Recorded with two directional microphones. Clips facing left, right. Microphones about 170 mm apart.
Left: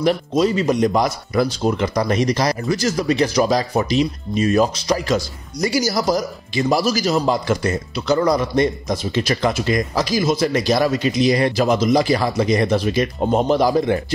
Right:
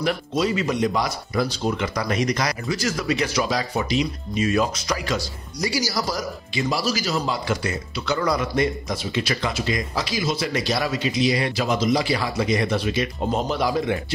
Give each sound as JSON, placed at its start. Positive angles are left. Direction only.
{"t": 0.0, "sound": "speech", "side_deg": 35}
{"t": 1.8, "sound": "speech", "side_deg": 35}
{"t": 13.2, "sound": "speech", "side_deg": 60}
{"t": 13.5, "sound": "speech", "side_deg": 40}